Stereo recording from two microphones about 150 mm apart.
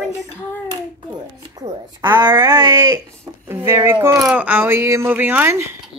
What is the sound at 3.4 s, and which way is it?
Speech, 15° right (ahead or behind).